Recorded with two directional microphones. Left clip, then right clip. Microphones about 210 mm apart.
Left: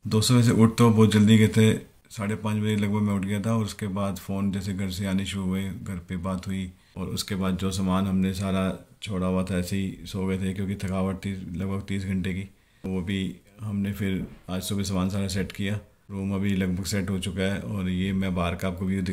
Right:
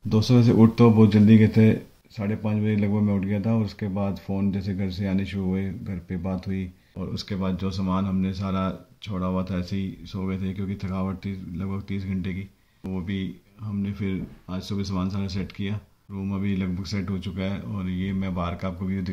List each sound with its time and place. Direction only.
0.1 s speech: 30° left (ahead or behind)
1.0 s speech: 5° right (ahead or behind)